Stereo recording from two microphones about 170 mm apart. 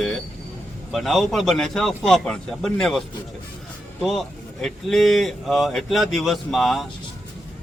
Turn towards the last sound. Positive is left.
turn(degrees=0)  # may be behind; listen again after turning